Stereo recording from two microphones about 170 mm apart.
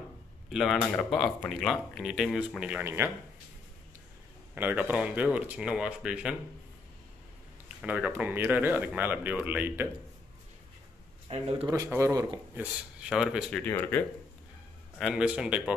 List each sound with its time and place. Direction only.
0.5 s speech: centre (ahead or behind)
4.6 s speech: 10° right (ahead or behind)
7.6 s speech: 5° right (ahead or behind)
11.2 s speech: 35° right (ahead or behind)
11.6 s speech: 20° right (ahead or behind)
13.1 s speech: 5° right (ahead or behind)
13.6 s speech: 10° left (ahead or behind)
15.0 s speech: 5° right (ahead or behind)